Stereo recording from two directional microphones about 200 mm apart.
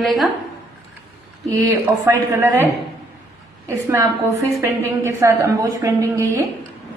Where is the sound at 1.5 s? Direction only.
20° right (ahead or behind).